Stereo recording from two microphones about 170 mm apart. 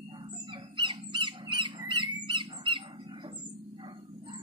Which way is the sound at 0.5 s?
30° right (ahead or behind).